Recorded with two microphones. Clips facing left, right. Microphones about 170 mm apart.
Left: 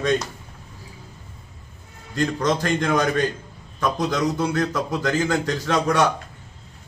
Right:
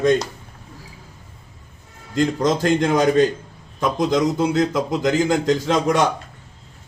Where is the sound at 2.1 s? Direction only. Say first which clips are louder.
Right 3 dB; 20° right (ahead or behind).